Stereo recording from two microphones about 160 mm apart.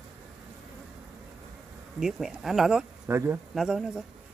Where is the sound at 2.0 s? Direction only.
Centre (ahead or behind).